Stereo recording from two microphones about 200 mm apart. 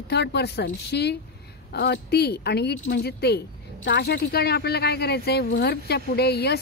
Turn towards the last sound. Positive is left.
turn(degrees=55)  # may be behind; listen again after turning